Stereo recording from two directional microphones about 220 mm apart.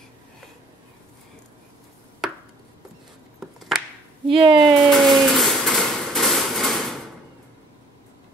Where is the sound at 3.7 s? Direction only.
Centre (ahead or behind).